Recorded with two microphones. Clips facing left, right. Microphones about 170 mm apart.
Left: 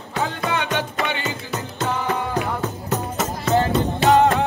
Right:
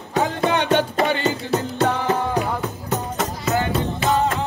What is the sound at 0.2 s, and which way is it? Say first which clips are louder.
Music: right 4 dB; 25° right (ahead or behind).